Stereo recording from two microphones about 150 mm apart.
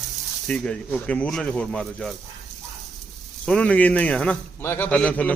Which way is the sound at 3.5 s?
5° left (ahead or behind).